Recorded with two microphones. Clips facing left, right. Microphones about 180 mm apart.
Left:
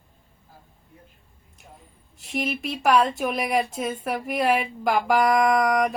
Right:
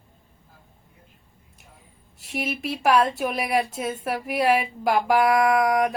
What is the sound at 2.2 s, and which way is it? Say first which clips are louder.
Speech: left 1 dB; 5° right (ahead or behind).